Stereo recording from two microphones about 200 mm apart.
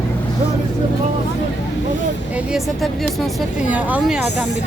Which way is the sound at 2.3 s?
Centre (ahead or behind).